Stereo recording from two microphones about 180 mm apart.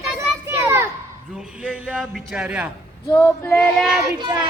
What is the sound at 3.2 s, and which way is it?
Female singing, 15° left (ahead or behind).